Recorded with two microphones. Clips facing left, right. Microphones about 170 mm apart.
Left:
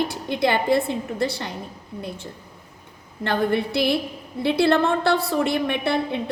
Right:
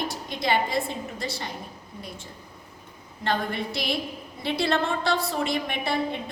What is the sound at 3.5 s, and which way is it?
A woman's voice, 60° left (ahead or behind).